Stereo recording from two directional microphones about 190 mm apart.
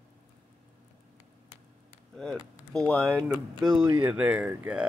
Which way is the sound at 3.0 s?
15° right (ahead or behind).